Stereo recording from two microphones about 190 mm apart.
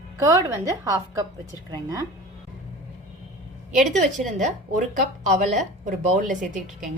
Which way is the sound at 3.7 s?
45° right (ahead or behind).